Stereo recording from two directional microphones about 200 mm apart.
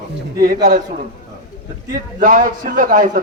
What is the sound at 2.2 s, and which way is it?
Speech, 40° right (ahead or behind).